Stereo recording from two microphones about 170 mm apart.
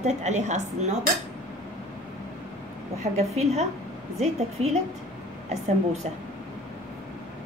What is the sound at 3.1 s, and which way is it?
Speech, 50° right (ahead or behind).